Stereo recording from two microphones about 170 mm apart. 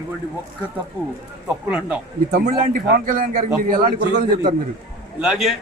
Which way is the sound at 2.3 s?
60° right (ahead or behind).